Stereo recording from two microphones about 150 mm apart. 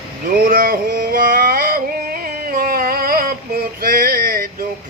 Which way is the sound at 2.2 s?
75° right (ahead or behind).